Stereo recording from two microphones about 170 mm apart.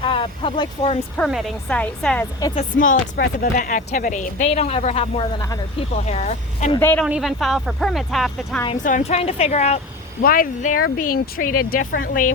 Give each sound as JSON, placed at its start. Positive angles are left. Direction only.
{"t": 0.0, "sound": "speech", "side_deg": 30}
{"t": 1.3, "sound": "speech", "side_deg": 0}
{"t": 2.6, "sound": "a woman's voice", "side_deg": 50}
{"t": 6.7, "sound": "speech", "side_deg": 10}
{"t": 7.0, "sound": "speech", "side_deg": 0}
{"t": 8.7, "sound": "a woman's voice", "side_deg": 50}
{"t": 10.2, "sound": "speech", "side_deg": 55}